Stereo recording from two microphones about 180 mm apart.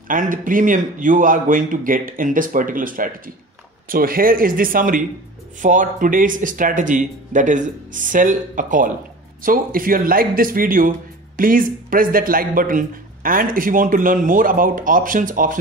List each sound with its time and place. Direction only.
0.1 s speech: 50° right (ahead or behind)